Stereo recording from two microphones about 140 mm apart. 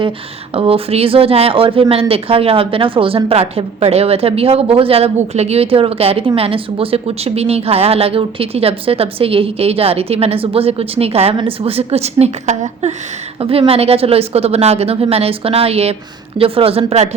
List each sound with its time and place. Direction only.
0.5 s speech: 45° right (ahead or behind)